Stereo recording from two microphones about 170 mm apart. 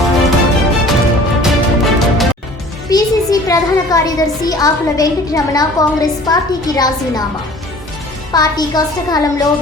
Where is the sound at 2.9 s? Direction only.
20° left (ahead or behind).